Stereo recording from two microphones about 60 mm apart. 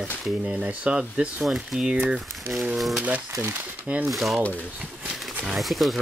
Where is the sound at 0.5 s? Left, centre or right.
Right.